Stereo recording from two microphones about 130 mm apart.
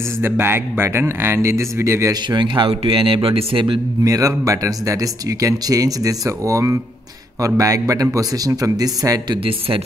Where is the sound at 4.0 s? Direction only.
25° right (ahead or behind).